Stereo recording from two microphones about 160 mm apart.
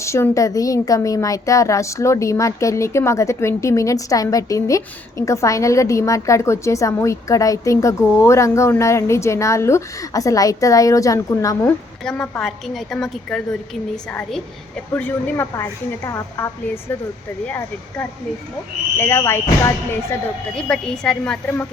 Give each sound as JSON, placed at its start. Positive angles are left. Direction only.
{"t": 0.0, "sound": "speech", "side_deg": 20}
{"t": 12.0, "sound": "a woman's voice", "side_deg": 5}
{"t": 20.6, "sound": "a woman's voice", "side_deg": 5}